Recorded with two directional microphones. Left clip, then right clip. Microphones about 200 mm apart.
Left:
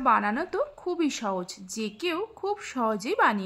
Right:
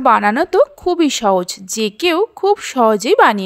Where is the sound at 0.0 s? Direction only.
40° right (ahead or behind).